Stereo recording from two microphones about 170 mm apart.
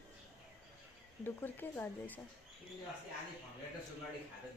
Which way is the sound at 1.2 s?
10° left (ahead or behind).